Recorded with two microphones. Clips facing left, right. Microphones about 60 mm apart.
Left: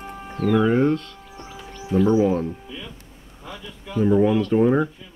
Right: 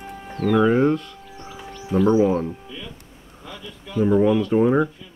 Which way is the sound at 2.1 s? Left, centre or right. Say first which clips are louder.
Right 1 dB; centre.